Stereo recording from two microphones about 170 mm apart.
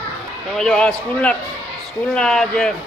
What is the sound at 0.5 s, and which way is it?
A man's voice, 5° left (ahead or behind).